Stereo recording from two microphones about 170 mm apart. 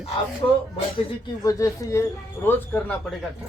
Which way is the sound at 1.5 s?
20° left (ahead or behind).